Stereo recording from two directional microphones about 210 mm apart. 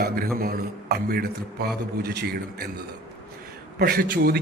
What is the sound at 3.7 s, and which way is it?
Speech, 45° right (ahead or behind).